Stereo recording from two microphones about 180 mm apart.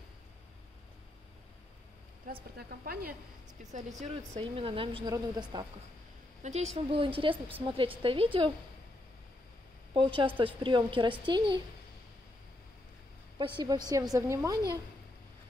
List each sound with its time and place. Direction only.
2.5 s a woman's voice: 55° right (ahead or behind)
3.7 s a woman's voice: 35° right (ahead or behind)
6.4 s a woman's voice: 40° right (ahead or behind)
9.9 s a woman's voice: 30° right (ahead or behind)
13.6 s a woman's voice: 20° right (ahead or behind)